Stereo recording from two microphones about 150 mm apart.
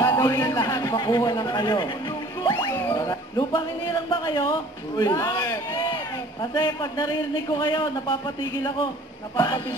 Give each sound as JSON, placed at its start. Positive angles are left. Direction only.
{"t": 0.0, "sound": "a sound", "side_deg": 20}
{"t": 2.5, "sound": "a man's voice", "side_deg": 20}
{"t": 3.5, "sound": "a man's voice", "side_deg": 30}